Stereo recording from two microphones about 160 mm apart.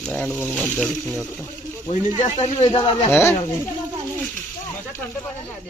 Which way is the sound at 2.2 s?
45° left (ahead or behind).